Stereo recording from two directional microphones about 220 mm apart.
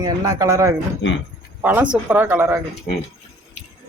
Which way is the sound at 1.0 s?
55° left (ahead or behind).